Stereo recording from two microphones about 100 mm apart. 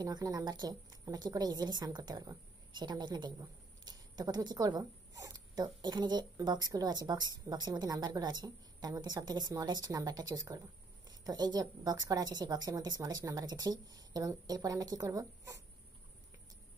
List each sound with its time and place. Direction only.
0.0 s a woman's voice: 40° right (ahead or behind)